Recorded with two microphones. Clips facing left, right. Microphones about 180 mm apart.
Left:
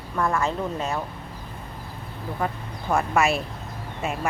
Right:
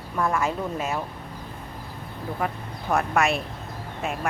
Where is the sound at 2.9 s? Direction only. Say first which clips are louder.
Left 1 dB; centre (ahead or behind).